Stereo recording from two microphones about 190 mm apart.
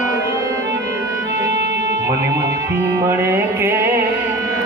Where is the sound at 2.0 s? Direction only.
15° right (ahead or behind).